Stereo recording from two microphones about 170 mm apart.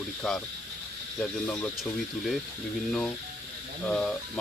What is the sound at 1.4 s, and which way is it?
Speech, 5° left (ahead or behind).